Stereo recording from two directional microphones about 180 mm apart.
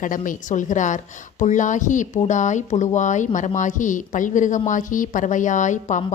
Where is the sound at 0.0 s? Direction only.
45° left (ahead or behind).